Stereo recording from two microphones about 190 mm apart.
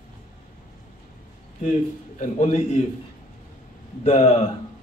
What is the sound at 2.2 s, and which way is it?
Speech, 40° left (ahead or behind).